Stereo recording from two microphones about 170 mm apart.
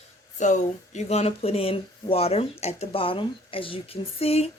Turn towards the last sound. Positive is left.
turn(degrees=35)  # may be behind; listen again after turning